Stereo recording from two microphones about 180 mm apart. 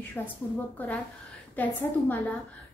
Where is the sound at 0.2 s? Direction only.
10° left (ahead or behind).